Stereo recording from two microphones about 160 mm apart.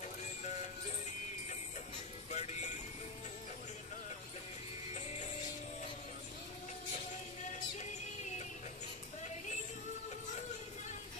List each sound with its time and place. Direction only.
2.3 s music: 45° left (ahead or behind)